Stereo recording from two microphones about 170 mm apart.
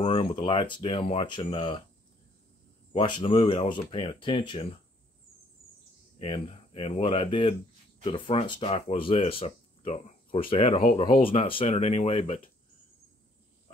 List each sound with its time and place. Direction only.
0.0 s speech: 30° left (ahead or behind)
2.9 s speech: 30° left (ahead or behind)
6.1 s speech: 30° left (ahead or behind)